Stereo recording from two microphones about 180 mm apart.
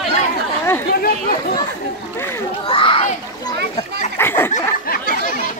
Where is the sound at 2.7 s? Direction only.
30° left (ahead or behind).